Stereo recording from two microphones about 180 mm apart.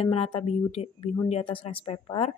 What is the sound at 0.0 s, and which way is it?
Speech, 30° left (ahead or behind).